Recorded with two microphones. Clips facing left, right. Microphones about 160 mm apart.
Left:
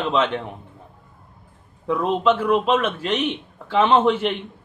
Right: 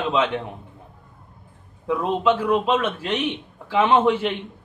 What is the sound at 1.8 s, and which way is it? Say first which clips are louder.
Speech: left 1 dB; 10° right (ahead or behind).